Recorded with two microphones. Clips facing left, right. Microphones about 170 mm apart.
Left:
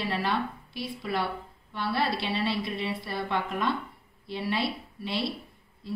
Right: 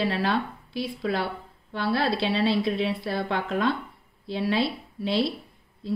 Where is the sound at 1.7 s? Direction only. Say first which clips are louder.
Right 4 dB; 90° right.